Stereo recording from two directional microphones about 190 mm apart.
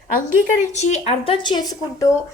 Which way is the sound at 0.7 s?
35° left (ahead or behind).